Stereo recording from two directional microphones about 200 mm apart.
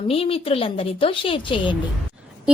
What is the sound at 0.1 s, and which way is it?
A woman's voice, 30° left (ahead or behind).